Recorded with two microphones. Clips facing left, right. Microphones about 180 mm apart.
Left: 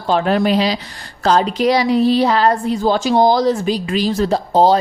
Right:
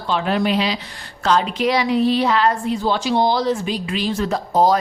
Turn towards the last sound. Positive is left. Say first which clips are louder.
# left 3 dB
turn(degrees=30)  # may be behind; listen again after turning